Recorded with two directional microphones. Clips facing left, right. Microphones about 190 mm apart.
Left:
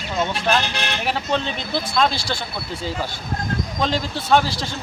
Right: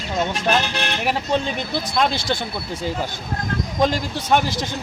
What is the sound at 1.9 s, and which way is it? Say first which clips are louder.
Speech: right 1 dB; 15° right (ahead or behind).